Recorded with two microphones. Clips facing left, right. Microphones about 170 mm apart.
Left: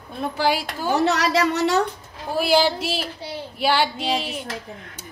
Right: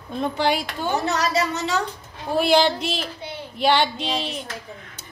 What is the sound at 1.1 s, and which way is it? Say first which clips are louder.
Speech: left 3 dB; 85° left.